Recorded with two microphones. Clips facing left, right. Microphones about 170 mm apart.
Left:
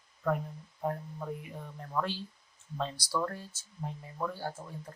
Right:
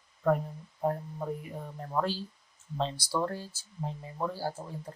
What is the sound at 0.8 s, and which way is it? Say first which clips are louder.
Speech: right 4 dB; 35° right (ahead or behind).